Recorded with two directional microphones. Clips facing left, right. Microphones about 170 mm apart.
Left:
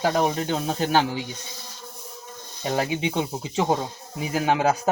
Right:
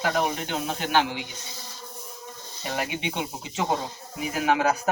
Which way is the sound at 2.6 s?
30° left (ahead or behind).